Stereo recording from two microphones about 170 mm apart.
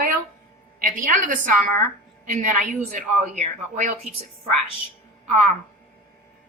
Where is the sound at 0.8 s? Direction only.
50° right (ahead or behind).